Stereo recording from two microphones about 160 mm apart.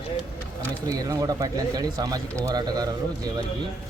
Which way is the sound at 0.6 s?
20° right (ahead or behind).